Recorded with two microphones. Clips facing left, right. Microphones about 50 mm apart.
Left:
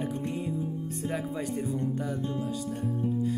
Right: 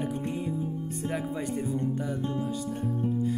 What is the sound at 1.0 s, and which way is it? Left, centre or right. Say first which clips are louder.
Speech: right 1 dB; centre.